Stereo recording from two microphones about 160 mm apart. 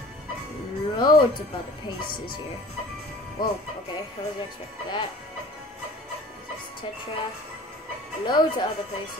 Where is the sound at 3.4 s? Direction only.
30° left (ahead or behind).